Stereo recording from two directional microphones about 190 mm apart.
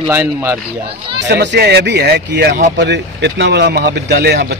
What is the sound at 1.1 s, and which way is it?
Speech, 65° right (ahead or behind).